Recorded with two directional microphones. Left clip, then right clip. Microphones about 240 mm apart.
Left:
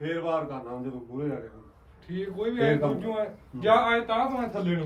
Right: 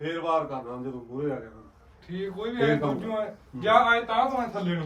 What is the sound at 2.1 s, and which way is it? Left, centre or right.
A man's voice, centre.